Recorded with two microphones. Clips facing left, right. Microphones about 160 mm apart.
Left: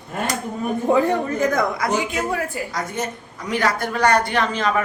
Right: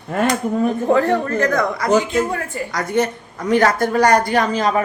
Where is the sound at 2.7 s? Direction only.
75° right (ahead or behind).